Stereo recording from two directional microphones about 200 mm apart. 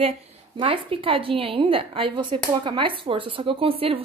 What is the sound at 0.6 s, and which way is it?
A woman's voice, 25° right (ahead or behind).